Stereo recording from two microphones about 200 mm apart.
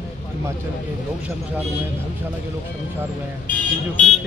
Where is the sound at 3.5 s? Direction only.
45° left (ahead or behind).